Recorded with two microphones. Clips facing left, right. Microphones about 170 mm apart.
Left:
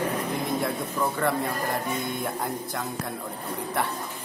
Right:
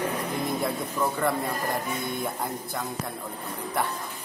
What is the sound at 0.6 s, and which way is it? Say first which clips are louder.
Speech: even; centre (ahead or behind).